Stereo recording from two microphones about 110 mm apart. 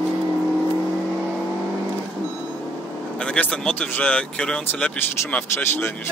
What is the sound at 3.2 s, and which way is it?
Speech, 10° left (ahead or behind).